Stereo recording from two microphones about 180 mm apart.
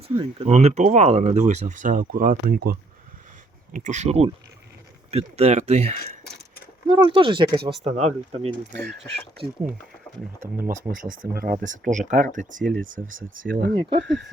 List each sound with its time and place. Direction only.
0.2 s speech: 30° right (ahead or behind)
0.5 s speech: 40° right (ahead or behind); by 2.7 s 55° right (ahead or behind)
3.7 s speech: 45° right (ahead or behind); by 7.6 s 25° right (ahead or behind)
7.9 s speech: 40° right (ahead or behind)
8.7 s speech: 65° right (ahead or behind)
9.4 s speech: 30° right (ahead or behind)
10.6 s speech: 50° right (ahead or behind)
13.9 s speech: 75° right (ahead or behind)